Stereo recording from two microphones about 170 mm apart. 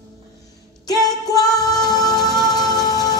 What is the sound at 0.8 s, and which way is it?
Music, 25° left (ahead or behind).